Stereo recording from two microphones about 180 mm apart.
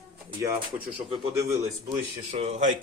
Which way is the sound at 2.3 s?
40° right (ahead or behind).